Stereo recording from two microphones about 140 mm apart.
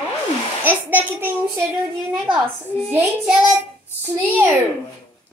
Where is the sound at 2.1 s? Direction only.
Centre (ahead or behind).